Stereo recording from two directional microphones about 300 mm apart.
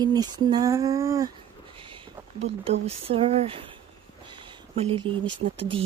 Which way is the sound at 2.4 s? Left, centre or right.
Centre.